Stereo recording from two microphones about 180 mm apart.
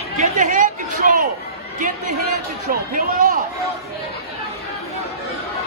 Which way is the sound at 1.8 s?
50° right (ahead or behind).